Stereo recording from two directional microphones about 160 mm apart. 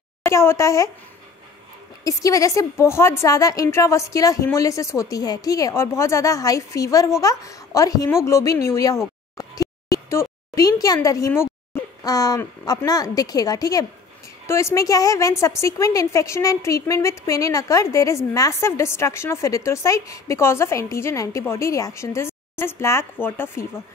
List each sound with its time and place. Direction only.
0.2 s speech: 15° left (ahead or behind)
2.0 s a woman's voice: 20° left (ahead or behind)